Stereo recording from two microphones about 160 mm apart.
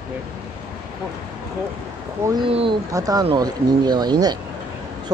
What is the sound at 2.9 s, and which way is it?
Speech, 20° right (ahead or behind).